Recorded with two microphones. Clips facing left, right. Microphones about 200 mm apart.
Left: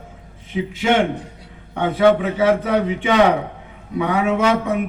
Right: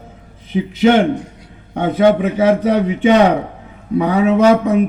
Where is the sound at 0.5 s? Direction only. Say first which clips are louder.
Right 4 dB; 40° right (ahead or behind).